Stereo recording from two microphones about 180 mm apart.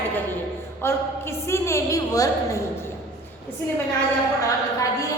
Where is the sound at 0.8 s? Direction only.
15° left (ahead or behind).